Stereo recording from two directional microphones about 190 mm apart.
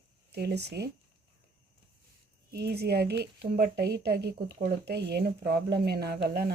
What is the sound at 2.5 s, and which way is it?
Speech, 60° right (ahead or behind).